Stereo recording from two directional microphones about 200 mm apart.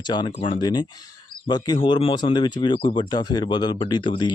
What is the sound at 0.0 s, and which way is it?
Speech, 20° left (ahead or behind).